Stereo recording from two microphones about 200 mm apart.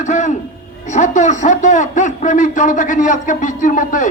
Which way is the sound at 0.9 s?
40° left (ahead or behind).